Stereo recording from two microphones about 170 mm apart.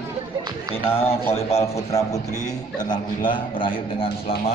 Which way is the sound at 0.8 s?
35° left (ahead or behind).